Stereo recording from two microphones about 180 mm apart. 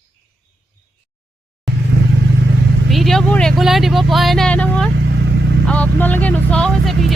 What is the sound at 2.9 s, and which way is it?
Speech, centre (ahead or behind).